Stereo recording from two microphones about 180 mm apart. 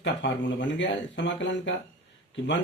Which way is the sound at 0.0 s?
80° left.